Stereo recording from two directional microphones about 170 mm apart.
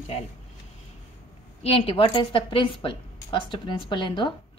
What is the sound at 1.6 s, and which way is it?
A woman's voice, 35° left (ahead or behind).